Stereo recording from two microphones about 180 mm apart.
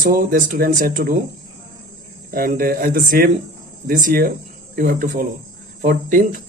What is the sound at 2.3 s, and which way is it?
Speech, 55° right (ahead or behind).